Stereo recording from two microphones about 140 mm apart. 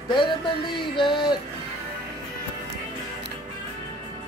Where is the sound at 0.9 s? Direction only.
35° left (ahead or behind).